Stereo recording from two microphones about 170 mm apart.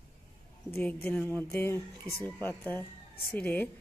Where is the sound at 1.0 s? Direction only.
10° left (ahead or behind).